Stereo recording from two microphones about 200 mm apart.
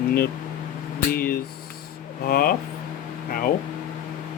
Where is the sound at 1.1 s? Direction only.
50° left (ahead or behind).